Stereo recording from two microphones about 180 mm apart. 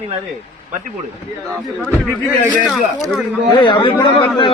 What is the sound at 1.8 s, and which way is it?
Speech, 10° left (ahead or behind).